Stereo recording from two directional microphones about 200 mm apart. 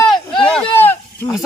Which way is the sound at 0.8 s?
10° left (ahead or behind).